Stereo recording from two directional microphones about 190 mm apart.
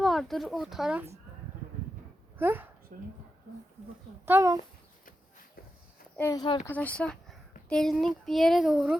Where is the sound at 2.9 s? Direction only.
45° right (ahead or behind).